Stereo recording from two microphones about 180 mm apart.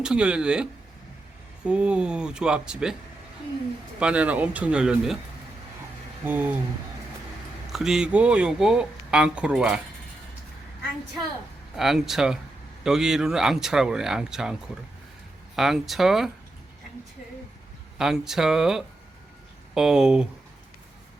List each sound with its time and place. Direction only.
0.0 s speech: 5° right (ahead or behind)
4.0 s speech: 5° right (ahead or behind)
6.2 s speech: 10° right (ahead or behind)
7.7 s speech: centre (ahead or behind)
11.8 s speech: centre (ahead or behind)
15.5 s speech: centre (ahead or behind)
17.9 s speech: 5° right (ahead or behind)